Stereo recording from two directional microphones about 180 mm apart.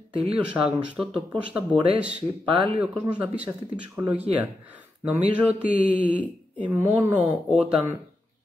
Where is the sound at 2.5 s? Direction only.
30° right (ahead or behind).